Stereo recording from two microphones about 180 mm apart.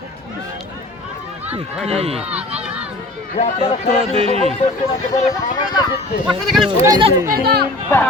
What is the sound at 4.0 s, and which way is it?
Speech, 35° right (ahead or behind).